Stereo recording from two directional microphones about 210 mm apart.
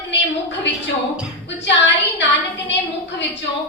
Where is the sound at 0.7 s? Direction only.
55° left (ahead or behind).